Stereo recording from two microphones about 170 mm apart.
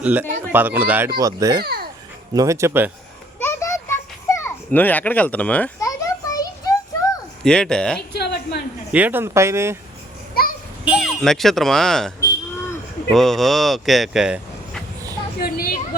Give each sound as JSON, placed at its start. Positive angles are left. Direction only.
{"t": 0.0, "sound": "speech", "side_deg": -10}
{"t": 1.2, "sound": "a child's voice", "side_deg": -20}
{"t": 1.6, "sound": "babbling", "side_deg": -65}
{"t": 2.3, "sound": "speech", "side_deg": -20}
{"t": 3.4, "sound": "children playing", "side_deg": 15}
{"t": 5.8, "sound": "children playing", "side_deg": 20}
{"t": 7.4, "sound": "speech", "side_deg": 5}
{"t": 8.1, "sound": "a sound", "side_deg": 75}
{"t": 8.9, "sound": "speech", "side_deg": -10}
{"t": 10.4, "sound": "children playing", "side_deg": 60}
{"t": 10.8, "sound": "speech", "side_deg": 0}
{"t": 15.4, "sound": "a woman's voice", "side_deg": 60}